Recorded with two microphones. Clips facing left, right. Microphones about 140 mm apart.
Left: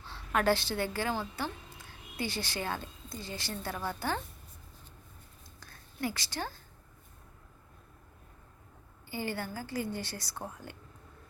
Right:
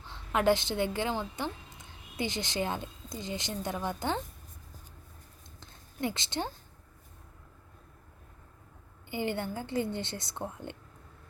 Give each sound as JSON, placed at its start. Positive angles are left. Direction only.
{"t": 0.0, "sound": "a woman's voice", "side_deg": -20}
{"t": 5.5, "sound": "a sound", "side_deg": -20}
{"t": 9.0, "sound": "a woman's voice", "side_deg": -20}